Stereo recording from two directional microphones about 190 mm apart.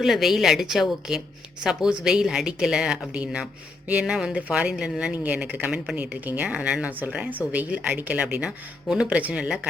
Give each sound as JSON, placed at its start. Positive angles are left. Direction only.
{"t": 0.0, "sound": "speech", "side_deg": 0}